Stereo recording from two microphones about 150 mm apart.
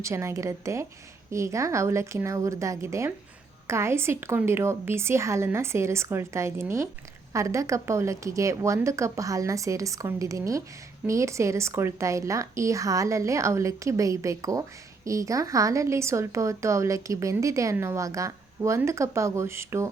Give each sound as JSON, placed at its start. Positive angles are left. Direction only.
{"t": 0.0, "sound": "a woman's voice", "side_deg": -20}